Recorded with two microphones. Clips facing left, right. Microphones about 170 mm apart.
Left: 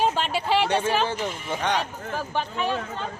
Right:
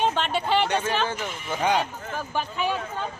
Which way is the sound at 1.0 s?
30° left (ahead or behind).